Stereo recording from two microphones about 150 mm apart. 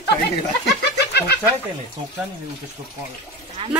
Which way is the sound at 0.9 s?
90° left.